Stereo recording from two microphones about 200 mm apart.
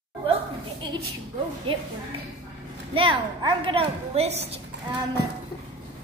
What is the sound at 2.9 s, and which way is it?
Speech, 25° right (ahead or behind).